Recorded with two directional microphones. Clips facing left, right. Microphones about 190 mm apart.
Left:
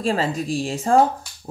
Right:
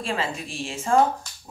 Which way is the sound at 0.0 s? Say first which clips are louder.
Left 6 dB; 40° left (ahead or behind).